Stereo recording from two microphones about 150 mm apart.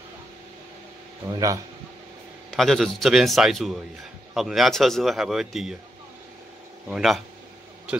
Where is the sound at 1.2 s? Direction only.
25° right (ahead or behind).